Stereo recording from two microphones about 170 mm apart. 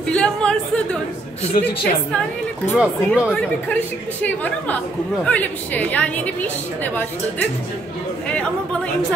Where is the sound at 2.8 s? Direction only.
5° right (ahead or behind).